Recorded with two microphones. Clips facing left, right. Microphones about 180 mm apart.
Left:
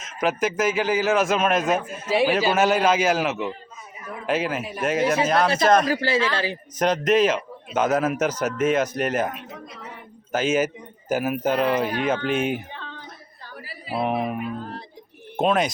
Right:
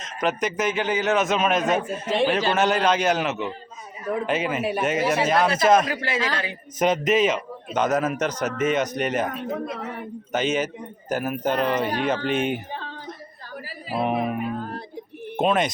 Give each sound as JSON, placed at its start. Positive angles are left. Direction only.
{"t": 0.0, "sound": "a man's voice", "side_deg": 0}
{"t": 5.9, "sound": "a man's voice", "side_deg": 30}
{"t": 6.7, "sound": "a man's voice", "side_deg": 0}
{"t": 9.3, "sound": "a woman's voice", "side_deg": -50}
{"t": 10.3, "sound": "a man's voice", "side_deg": 5}
{"t": 12.7, "sound": "a sound", "side_deg": -35}
{"t": 13.9, "sound": "a man's voice", "side_deg": 0}
{"t": 14.6, "sound": "a sound", "side_deg": -55}
{"t": 15.4, "sound": "a man's voice", "side_deg": 0}